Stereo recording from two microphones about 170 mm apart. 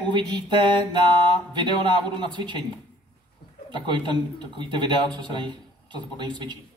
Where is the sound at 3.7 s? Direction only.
25° right (ahead or behind).